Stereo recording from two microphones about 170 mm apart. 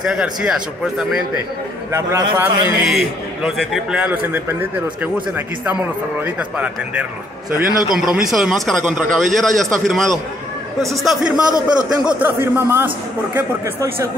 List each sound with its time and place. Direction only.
0.0 s speech: 5° right (ahead or behind)
1.9 s a man's voice: 20° right (ahead or behind)
2.9 s a man's voice: centre (ahead or behind)
6.2 s a man's voice: 10° right (ahead or behind)